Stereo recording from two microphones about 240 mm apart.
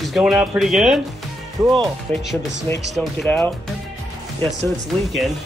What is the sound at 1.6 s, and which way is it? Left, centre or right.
Speech, centre.